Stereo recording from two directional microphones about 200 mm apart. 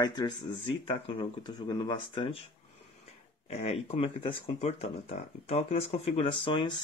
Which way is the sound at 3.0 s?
30° left (ahead or behind).